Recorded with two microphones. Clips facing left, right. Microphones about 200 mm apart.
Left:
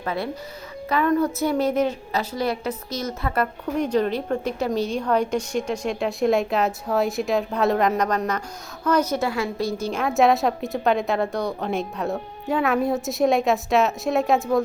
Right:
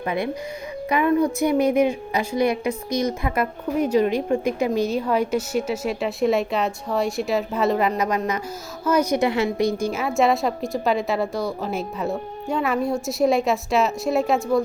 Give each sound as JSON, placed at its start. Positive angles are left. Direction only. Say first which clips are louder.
{"t": 0.0, "sound": "a woman's voice", "louder": "right 3 dB", "side_deg": -15}